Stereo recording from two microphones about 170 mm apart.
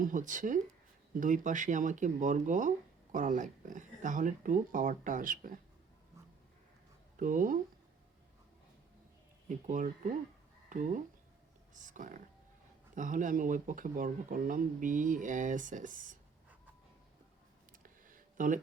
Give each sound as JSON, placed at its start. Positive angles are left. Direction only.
{"t": 0.0, "sound": "speech", "side_deg": -50}
{"t": 7.2, "sound": "speech", "side_deg": -50}
{"t": 9.5, "sound": "speech", "side_deg": -45}
{"t": 17.8, "sound": "a sound", "side_deg": -50}